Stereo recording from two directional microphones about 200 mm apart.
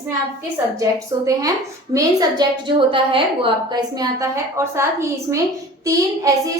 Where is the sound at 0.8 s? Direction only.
15° right (ahead or behind).